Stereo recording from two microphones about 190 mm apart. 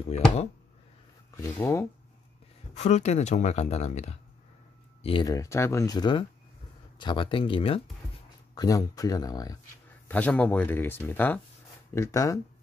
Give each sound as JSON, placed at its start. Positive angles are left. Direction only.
{"t": 0.1, "sound": "speech", "side_deg": 35}
{"t": 1.3, "sound": "speech", "side_deg": 15}
{"t": 2.7, "sound": "speech", "side_deg": 35}
{"t": 5.0, "sound": "speech", "side_deg": 20}
{"t": 10.0, "sound": "speech", "side_deg": 10}